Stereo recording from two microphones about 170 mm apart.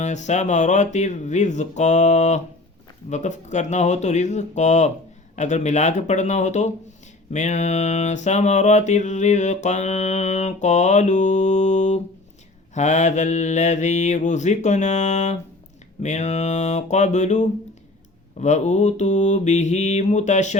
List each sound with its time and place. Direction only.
0.0 s mantra: 45° left (ahead or behind)